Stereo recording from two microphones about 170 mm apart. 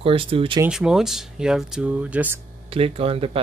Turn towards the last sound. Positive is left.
turn(degrees=-35)  # may be behind; listen again after turning